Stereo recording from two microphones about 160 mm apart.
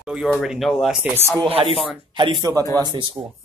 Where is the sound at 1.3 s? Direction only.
35° right (ahead or behind).